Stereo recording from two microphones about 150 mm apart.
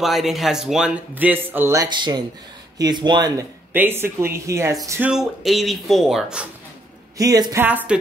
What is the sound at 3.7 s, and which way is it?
Speech, 15° right (ahead or behind).